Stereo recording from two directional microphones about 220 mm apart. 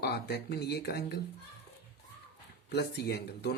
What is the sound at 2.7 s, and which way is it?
Speech, 45° left (ahead or behind).